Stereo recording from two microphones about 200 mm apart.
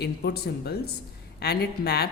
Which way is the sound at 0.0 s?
55° left (ahead or behind).